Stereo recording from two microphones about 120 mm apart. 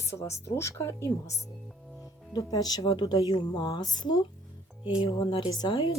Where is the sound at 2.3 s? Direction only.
35° left (ahead or behind).